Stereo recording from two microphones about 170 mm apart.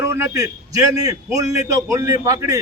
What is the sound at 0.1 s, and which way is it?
A man's voice, 20° right (ahead or behind).